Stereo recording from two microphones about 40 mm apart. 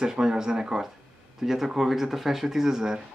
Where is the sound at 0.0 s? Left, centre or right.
Centre.